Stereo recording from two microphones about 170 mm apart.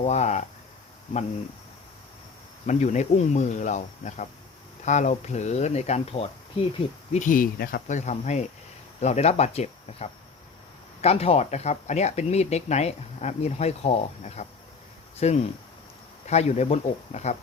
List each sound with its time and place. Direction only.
0.0 s speech: 40° left (ahead or behind)
2.6 s speech: 45° left (ahead or behind)
7.1 s speech: 50° left (ahead or behind)